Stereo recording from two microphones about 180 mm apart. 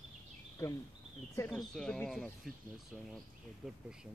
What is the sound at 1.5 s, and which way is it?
Speech, centre (ahead or behind).